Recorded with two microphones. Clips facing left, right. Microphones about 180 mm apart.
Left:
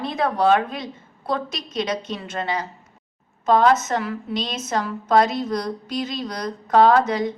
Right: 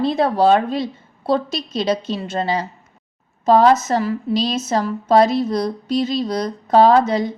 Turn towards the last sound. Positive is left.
turn(degrees=-30)  # may be behind; listen again after turning